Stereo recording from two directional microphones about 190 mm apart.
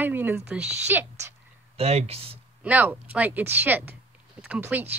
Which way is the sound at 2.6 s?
10° right (ahead or behind).